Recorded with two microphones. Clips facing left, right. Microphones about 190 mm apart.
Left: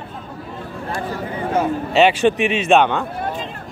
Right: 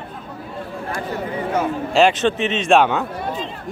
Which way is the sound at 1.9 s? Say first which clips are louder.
Left 1 dB; 5° left (ahead or behind).